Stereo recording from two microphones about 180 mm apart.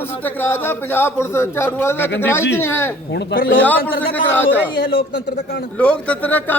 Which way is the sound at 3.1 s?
60° left (ahead or behind).